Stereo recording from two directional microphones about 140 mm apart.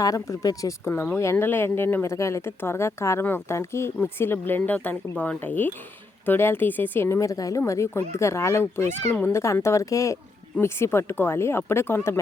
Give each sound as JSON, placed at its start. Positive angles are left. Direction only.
{"t": 0.0, "sound": "speech", "side_deg": 25}